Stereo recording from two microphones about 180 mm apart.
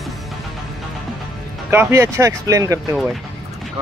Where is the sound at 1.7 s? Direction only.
15° right (ahead or behind).